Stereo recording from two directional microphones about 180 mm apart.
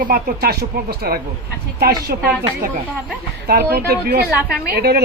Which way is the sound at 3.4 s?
60° right (ahead or behind).